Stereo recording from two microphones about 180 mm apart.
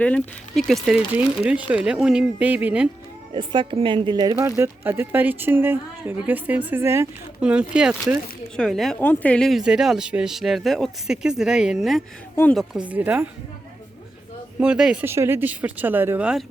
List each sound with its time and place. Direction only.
0.0 s speech: 5° left (ahead or behind)
3.3 s speech: 30° right (ahead or behind); by 13.2 s 10° right (ahead or behind)
14.6 s speech: 5° right (ahead or behind)